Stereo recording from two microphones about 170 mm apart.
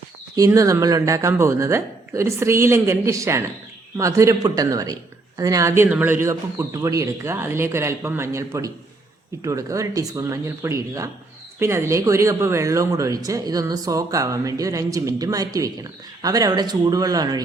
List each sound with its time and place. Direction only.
0.3 s speech: 20° right (ahead or behind)